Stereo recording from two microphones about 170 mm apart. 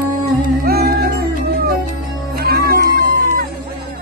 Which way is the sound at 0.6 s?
65° right (ahead or behind).